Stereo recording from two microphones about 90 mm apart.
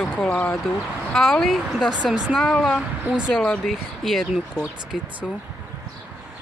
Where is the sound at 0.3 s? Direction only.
20° left (ahead or behind).